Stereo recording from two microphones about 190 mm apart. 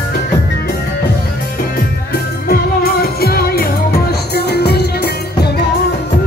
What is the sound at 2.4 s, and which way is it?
Music, 50° left (ahead or behind).